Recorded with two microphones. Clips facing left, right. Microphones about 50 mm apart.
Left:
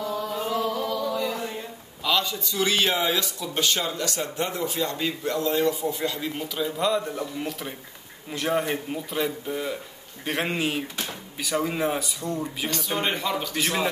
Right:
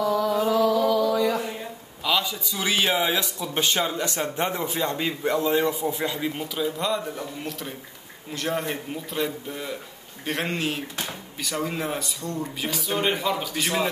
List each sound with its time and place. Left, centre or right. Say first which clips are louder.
0.0 s a sound: right 6 dB; right
2.0 s a man's voice: even; centre
6.3 s a man's voice: right 1 dB; centre